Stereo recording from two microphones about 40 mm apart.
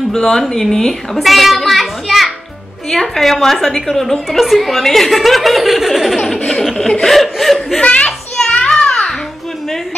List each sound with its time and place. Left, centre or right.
0.1 s speech: centre
1.1 s children playing: centre
2.9 s a woman's voice: centre
6.2 s a sound: centre
7.1 s chuckle: centre
7.8 s a child's voice: left
8.4 s children playing: left